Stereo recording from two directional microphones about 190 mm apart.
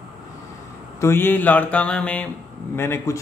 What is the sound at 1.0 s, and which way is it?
Speech, 10° left (ahead or behind).